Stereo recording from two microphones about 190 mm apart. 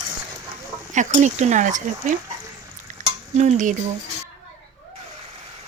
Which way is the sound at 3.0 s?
40° right (ahead or behind).